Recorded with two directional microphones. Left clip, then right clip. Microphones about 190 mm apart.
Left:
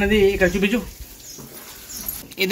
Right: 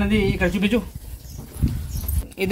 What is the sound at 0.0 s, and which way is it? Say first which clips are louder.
Speech: left 5 dB; 40° right (ahead or behind).